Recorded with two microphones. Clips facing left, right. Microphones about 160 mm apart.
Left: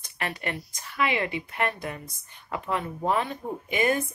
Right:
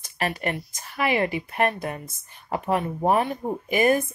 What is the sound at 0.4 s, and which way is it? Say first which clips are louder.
Speech: right 4 dB; 50° right (ahead or behind).